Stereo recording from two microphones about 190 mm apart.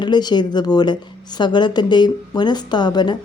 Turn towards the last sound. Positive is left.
turn(degrees=25)  # may be behind; listen again after turning